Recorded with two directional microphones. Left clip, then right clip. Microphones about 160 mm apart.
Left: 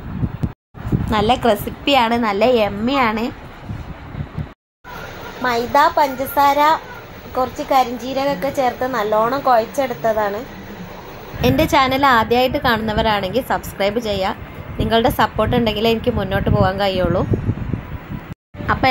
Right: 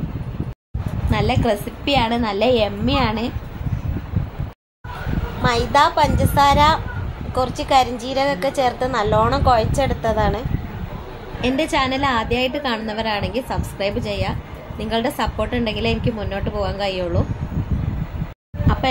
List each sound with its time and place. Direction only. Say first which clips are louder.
1.1 s a woman's voice: left 4 dB; 20° left (ahead or behind)
5.4 s a woman's voice: left 1 dB; 25° left (ahead or behind)
11.4 s a woman's voice: left 5 dB; 20° left (ahead or behind)